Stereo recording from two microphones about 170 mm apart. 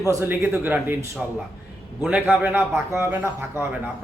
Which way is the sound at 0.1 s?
15° right (ahead or behind).